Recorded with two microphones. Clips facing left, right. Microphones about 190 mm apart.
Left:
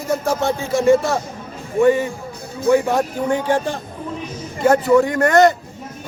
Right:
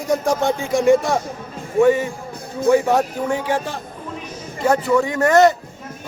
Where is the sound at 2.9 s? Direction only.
5° right (ahead or behind).